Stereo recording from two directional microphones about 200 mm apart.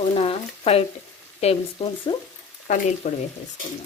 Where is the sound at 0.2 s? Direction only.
30° left (ahead or behind).